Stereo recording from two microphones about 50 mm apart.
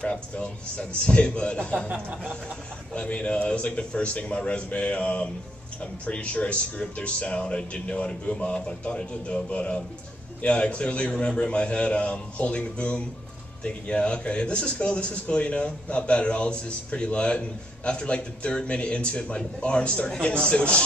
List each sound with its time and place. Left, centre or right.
0.0 s a man's voice: left
1.9 s speech: right
2.9 s a man's voice: left